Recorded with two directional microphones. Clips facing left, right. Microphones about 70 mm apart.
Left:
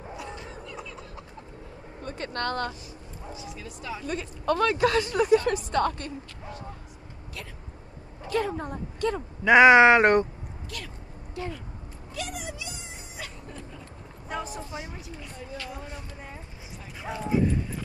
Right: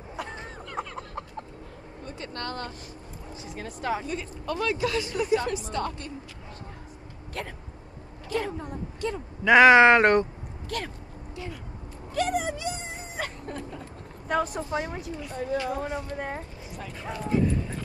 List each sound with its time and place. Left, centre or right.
0.2 s a sound: right
2.0 s vehicle: left
3.3 s a woman's voice: right
4.1 s speech: left
7.4 s speech: right
8.3 s a sound: left
9.4 s speech: centre
10.7 s a woman's voice: right
11.4 s speech: left
12.1 s a sound: right
14.2 s a woman's voice: right
16.1 s speech: right
17.0 s a sound: centre